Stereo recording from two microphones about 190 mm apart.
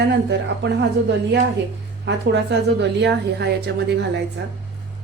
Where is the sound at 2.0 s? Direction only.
65° right (ahead or behind).